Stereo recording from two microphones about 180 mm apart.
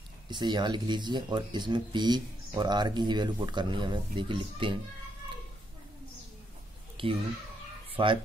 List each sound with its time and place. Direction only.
0.3 s speech: 25° right (ahead or behind)
7.0 s speech: 30° right (ahead or behind)